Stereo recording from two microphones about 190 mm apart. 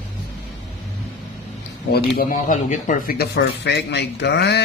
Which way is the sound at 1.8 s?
55° left (ahead or behind).